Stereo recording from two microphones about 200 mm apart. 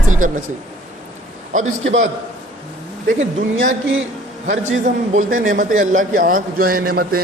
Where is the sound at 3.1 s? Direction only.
40° right (ahead or behind).